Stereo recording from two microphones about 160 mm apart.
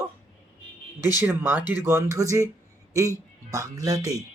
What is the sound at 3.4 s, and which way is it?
Speech, 20° right (ahead or behind).